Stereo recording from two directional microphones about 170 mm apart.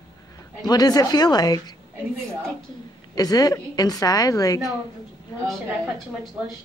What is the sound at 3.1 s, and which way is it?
A woman's voice, 20° left (ahead or behind).